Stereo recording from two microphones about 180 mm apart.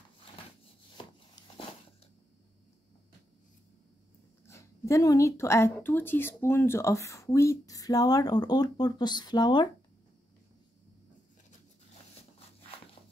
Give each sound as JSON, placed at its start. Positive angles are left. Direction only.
{"t": 4.5, "sound": "speech", "side_deg": 15}